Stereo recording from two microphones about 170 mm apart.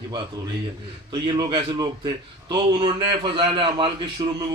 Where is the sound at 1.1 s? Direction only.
25° right (ahead or behind).